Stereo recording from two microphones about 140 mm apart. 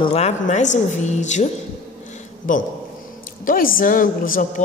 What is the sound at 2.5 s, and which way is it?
Speech, 70° left (ahead or behind).